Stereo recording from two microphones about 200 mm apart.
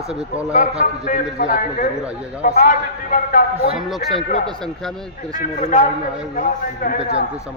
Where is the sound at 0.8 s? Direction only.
40° left (ahead or behind).